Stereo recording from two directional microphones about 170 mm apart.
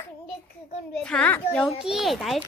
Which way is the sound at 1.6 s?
5° right (ahead or behind).